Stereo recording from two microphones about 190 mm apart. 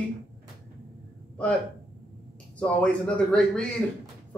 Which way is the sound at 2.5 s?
5° left (ahead or behind).